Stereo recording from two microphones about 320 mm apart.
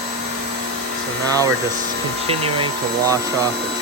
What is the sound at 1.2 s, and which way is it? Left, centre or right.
Speech, centre.